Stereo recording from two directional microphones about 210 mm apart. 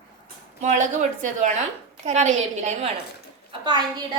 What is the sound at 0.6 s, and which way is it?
A woman's voice, 35° right (ahead or behind).